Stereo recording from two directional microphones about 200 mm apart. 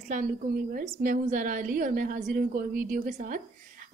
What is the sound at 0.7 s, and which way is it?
A woman's voice, 40° right (ahead or behind).